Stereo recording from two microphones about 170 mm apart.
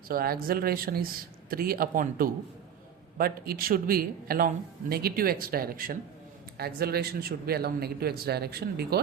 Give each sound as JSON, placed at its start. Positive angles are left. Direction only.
{"t": 0.1, "sound": "a man's voice", "side_deg": -60}